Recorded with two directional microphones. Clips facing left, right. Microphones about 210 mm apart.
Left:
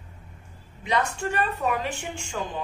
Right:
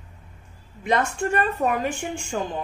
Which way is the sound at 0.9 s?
50° right (ahead or behind).